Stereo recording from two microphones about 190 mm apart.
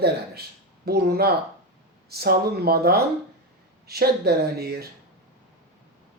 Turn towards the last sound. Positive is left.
turn(degrees=-55)  # may be behind; listen again after turning